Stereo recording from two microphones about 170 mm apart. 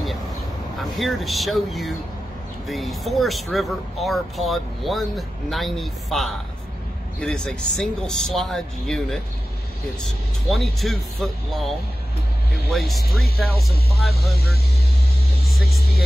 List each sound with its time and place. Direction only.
0.7 s speech: centre (ahead or behind)
10.5 s speech: centre (ahead or behind)
12.7 s speech: centre (ahead or behind)